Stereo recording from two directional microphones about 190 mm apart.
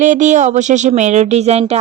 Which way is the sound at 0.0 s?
40° right (ahead or behind).